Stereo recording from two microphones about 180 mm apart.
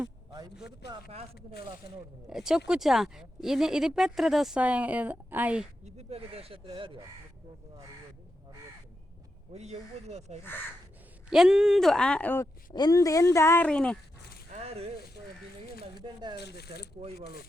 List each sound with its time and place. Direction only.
0.3 s a sound: 20° right (ahead or behind)
0.8 s speech: 65° left (ahead or behind)
2.3 s speech: 5° right (ahead or behind)
5.8 s speech: 35° right (ahead or behind)
9.5 s speech: 35° right (ahead or behind)
11.3 s speech: 5° right (ahead or behind)
12.7 s speech: 20° left (ahead or behind); by 14.0 s 5° left (ahead or behind)
14.5 s a sound: 35° right (ahead or behind)
16.0 s speech: 25° right (ahead or behind)
16.4 s speech: 65° left (ahead or behind)
17.0 s speech: 40° right (ahead or behind)